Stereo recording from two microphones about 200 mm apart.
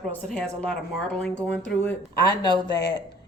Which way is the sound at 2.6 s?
20° left (ahead or behind).